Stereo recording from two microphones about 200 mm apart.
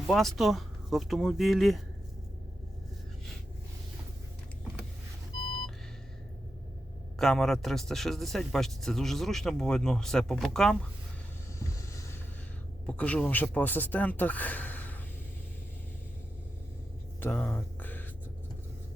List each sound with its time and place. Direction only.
0.1 s speech: centre (ahead or behind)
7.2 s speech: centre (ahead or behind)
11.7 s boat: 15° left (ahead or behind)
12.8 s speech: 5° left (ahead or behind)
17.2 s a sound: 10° left (ahead or behind)